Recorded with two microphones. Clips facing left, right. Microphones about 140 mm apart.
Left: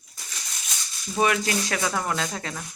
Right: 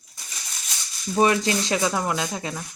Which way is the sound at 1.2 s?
25° right (ahead or behind).